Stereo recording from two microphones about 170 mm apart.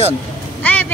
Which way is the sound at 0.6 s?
10° left (ahead or behind).